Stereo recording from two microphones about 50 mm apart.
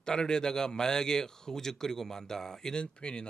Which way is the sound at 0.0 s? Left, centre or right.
Centre.